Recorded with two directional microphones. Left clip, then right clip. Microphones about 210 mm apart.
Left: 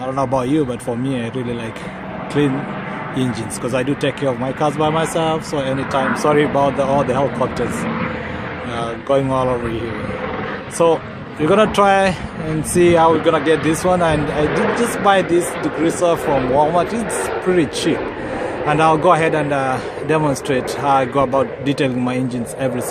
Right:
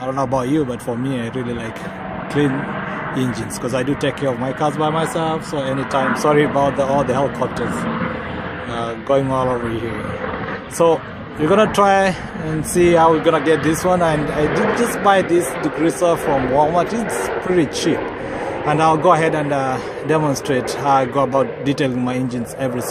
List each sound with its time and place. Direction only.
0.2 s a man's voice: centre (ahead or behind)
2.4 s a man's voice: centre (ahead or behind)
8.8 s speech: centre (ahead or behind)
10.8 s a man's voice: centre (ahead or behind)